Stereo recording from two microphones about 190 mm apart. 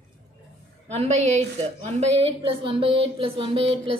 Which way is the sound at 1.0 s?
35° right (ahead or behind).